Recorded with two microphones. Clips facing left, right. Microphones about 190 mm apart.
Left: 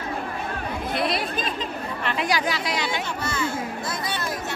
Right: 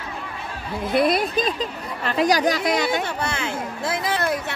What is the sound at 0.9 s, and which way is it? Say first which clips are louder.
Speech: right 8 dB; 50° right (ahead or behind).